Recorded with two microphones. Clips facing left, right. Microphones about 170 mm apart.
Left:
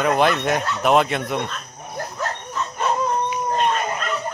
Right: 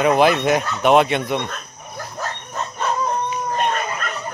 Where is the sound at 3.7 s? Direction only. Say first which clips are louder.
Left 1 dB; 50° right (ahead or behind).